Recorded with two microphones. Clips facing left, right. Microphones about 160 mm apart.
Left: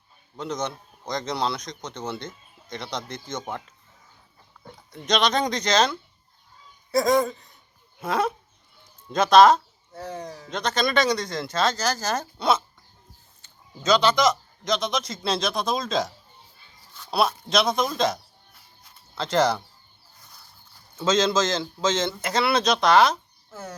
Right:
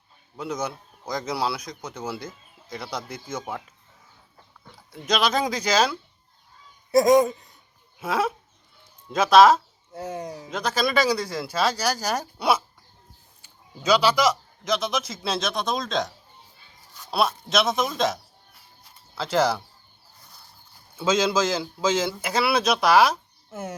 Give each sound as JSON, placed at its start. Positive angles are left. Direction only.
{"t": 0.3, "sound": "a man's voice", "side_deg": -10}
{"t": 4.9, "sound": "a man's voice", "side_deg": -5}
{"t": 7.9, "sound": "speech", "side_deg": -5}
{"t": 10.0, "sound": "a man's voice", "side_deg": -15}
{"t": 10.5, "sound": "a man's voice", "side_deg": -5}
{"t": 20.9, "sound": "a man's voice", "side_deg": -10}
{"t": 23.5, "sound": "speech", "side_deg": -25}